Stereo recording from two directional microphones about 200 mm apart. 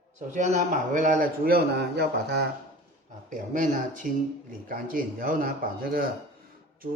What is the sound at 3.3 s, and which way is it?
A man's voice, 40° right (ahead or behind).